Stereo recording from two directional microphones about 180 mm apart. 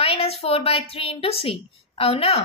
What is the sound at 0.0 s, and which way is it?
A woman's voice, 35° left (ahead or behind).